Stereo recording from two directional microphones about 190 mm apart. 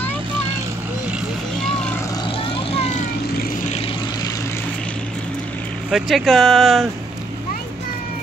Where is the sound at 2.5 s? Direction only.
30° left (ahead or behind).